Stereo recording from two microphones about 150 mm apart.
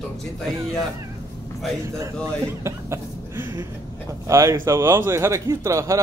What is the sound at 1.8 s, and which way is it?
A man's voice, 20° right (ahead or behind).